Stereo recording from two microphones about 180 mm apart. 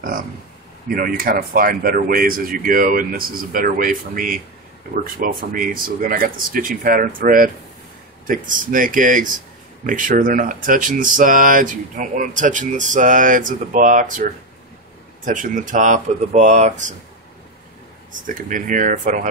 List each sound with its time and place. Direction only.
0.8 s speech: 55° right (ahead or behind)
5.5 s speech: 50° right (ahead or behind)
18.2 s speech: 45° right (ahead or behind)